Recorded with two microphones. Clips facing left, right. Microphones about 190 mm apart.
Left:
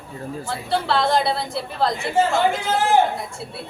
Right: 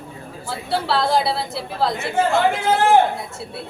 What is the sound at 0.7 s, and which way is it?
A woman's voice, 5° right (ahead or behind).